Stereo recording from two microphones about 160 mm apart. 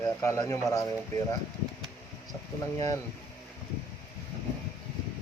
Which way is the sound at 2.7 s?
20° left (ahead or behind).